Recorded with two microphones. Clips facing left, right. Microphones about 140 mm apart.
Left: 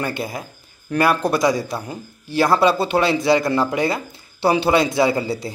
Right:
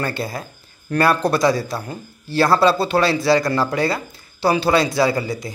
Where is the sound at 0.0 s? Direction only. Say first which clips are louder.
Even; 15° left (ahead or behind).